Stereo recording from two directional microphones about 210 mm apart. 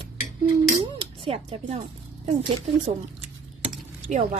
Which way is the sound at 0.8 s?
30° right (ahead or behind).